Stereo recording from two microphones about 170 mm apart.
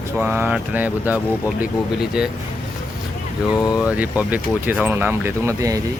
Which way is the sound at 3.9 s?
10° right (ahead or behind).